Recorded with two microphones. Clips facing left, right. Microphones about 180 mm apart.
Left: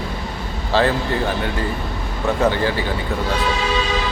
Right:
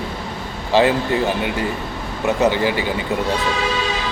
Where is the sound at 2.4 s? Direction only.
15° right (ahead or behind).